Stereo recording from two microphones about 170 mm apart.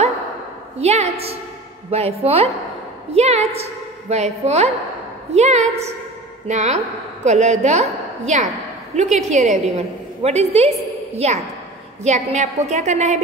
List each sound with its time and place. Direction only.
0.7 s a woman's voice: 40° right (ahead or behind)